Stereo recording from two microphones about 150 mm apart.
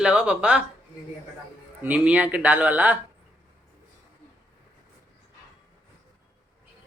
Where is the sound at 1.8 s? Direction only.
10° right (ahead or behind).